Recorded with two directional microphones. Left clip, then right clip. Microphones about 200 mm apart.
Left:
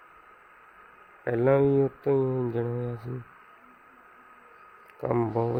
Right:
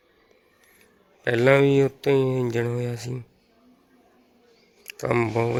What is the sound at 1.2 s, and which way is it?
Speech, centre (ahead or behind).